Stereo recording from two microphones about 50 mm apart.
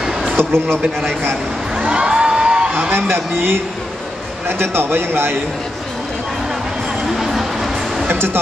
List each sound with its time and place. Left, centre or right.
0.4 s a man's voice: right
1.8 s music: right
3.1 s speech: right
7.1 s music: centre
8.1 s speech: right